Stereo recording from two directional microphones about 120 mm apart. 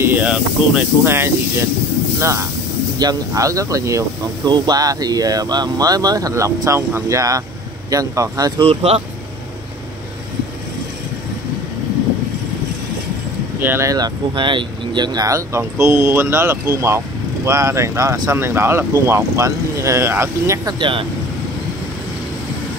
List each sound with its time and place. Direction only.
0.0 s speech: 15° right (ahead or behind); by 8.6 s 30° right (ahead or behind)
8.6 s speech: 55° right (ahead or behind)
13.6 s speech: 20° right (ahead or behind)